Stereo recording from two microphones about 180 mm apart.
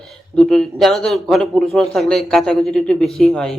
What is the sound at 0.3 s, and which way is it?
A man's voice, 5° left (ahead or behind).